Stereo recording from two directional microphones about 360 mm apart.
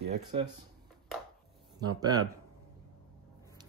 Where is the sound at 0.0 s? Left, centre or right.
Centre.